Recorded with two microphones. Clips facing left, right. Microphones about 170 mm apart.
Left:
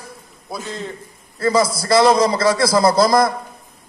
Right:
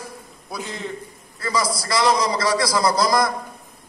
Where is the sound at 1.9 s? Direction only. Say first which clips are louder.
Left 6 dB; 25° left (ahead or behind).